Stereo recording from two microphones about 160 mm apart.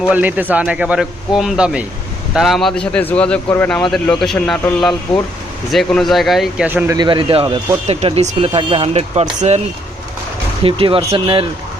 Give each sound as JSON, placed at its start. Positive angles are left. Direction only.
{"t": 0.1, "sound": "speech", "side_deg": -10}
{"t": 6.7, "sound": "speech", "side_deg": -15}
{"t": 6.9, "sound": "speech", "side_deg": -30}
{"t": 10.6, "sound": "speech", "side_deg": -35}